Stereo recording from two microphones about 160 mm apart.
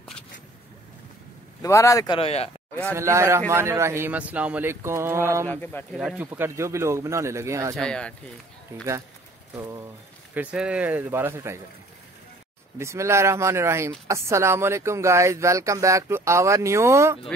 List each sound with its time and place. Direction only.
1.6 s speech: 20° left (ahead or behind)
2.1 s speech: 40° left (ahead or behind)
2.9 s speech: 15° right (ahead or behind)
5.5 s speech: 10° left (ahead or behind)
5.9 s speech: 5° right (ahead or behind)
7.7 s speech: 5° left (ahead or behind)
8.7 s speech: 15° right (ahead or behind)
10.3 s speech: 10° right (ahead or behind)
12.7 s speech: 15° right (ahead or behind)